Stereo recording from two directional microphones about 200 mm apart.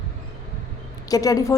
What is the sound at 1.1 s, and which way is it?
Speech, 20° left (ahead or behind).